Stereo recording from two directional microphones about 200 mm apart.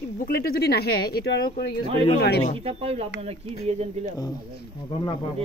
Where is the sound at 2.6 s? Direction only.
30° right (ahead or behind).